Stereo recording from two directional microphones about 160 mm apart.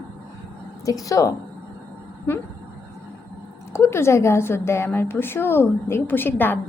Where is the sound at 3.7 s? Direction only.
15° left (ahead or behind).